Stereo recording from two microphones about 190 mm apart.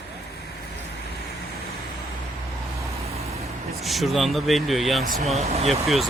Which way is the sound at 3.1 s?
35° right (ahead or behind).